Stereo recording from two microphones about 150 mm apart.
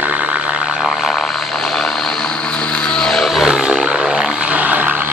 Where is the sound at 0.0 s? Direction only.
10° right (ahead or behind).